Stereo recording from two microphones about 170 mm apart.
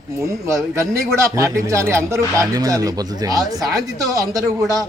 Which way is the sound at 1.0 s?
15° right (ahead or behind).